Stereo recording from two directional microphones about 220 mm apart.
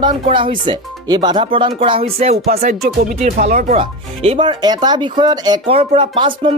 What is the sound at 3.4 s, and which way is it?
Speech, 35° right (ahead or behind).